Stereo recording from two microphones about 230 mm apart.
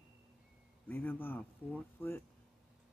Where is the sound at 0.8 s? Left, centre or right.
Centre.